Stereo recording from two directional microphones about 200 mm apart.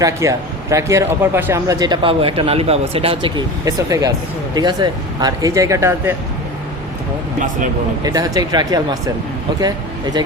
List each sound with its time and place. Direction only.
0.0 s speech: 15° right (ahead or behind)
8.0 s speech: 20° right (ahead or behind)